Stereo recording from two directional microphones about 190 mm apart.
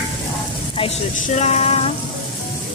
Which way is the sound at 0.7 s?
35° left (ahead or behind).